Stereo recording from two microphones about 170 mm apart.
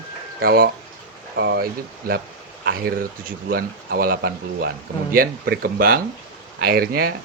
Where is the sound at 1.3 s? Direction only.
75° right (ahead or behind).